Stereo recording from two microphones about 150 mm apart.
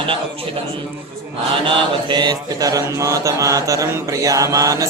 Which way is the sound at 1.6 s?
35° right (ahead or behind).